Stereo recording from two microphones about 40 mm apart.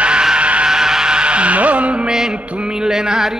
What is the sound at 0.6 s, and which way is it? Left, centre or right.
Music, centre.